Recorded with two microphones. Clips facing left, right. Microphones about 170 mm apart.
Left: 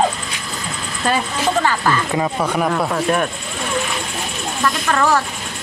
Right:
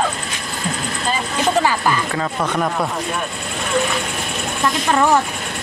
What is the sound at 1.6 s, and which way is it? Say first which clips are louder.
Speech: even; 15° right (ahead or behind).